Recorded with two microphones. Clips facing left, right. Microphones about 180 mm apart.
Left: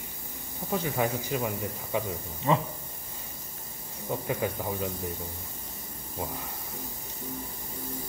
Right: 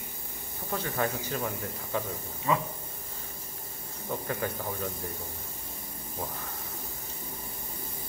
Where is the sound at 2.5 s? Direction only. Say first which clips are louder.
Left 2 dB; 30° left (ahead or behind).